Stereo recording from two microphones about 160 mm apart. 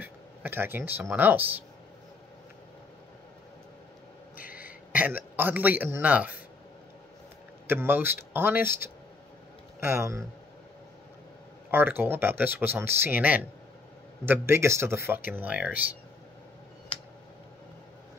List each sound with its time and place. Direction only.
0.0 s speech: 10° right (ahead or behind)
4.9 s speech: 10° right (ahead or behind)
7.6 s speech: 15° right (ahead or behind)
11.7 s speech: 10° right (ahead or behind)